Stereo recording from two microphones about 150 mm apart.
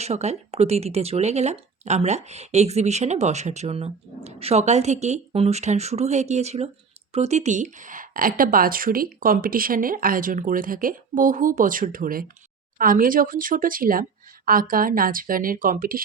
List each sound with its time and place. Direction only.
0.0 s a woman's voice: 45° right (ahead or behind); by 16.0 s 70° right (ahead or behind)